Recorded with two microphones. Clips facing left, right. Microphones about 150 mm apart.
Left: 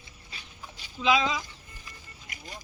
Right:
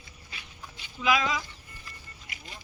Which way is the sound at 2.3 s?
45° left (ahead or behind).